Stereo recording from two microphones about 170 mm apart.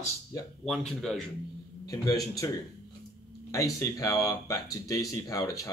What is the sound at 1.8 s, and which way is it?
Speech, 20° left (ahead or behind).